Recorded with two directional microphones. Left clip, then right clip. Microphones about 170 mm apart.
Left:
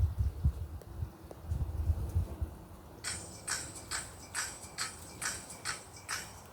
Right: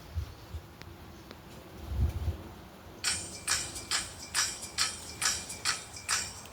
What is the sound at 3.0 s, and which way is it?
Music, 30° right (ahead or behind).